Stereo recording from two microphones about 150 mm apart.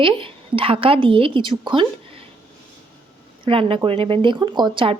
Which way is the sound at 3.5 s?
35° right (ahead or behind).